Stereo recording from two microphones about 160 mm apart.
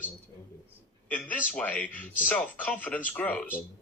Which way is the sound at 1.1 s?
10° left (ahead or behind).